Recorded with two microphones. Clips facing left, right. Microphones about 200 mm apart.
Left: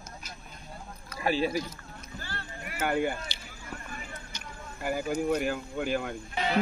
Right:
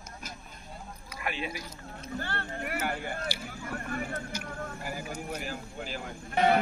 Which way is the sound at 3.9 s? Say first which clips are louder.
Right 9 dB; 60° right (ahead or behind).